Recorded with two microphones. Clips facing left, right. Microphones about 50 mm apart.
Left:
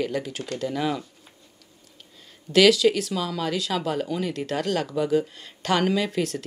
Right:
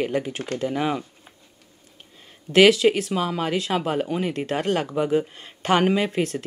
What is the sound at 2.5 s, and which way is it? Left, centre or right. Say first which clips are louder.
Speech: right 2 dB; right.